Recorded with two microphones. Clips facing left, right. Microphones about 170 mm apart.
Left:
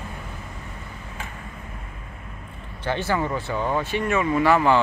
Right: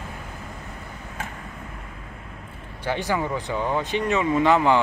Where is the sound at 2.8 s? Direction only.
15° right (ahead or behind).